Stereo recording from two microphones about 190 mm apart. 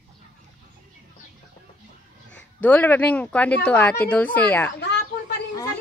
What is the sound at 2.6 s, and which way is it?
Speech, 10° left (ahead or behind).